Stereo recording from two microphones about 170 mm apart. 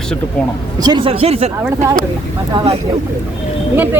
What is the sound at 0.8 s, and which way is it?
Speech, 30° right (ahead or behind).